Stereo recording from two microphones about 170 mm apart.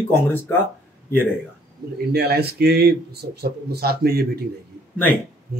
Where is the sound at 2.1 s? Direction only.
70° right (ahead or behind).